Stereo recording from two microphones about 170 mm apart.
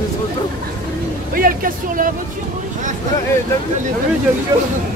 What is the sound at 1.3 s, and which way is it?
Speech, 55° right (ahead or behind).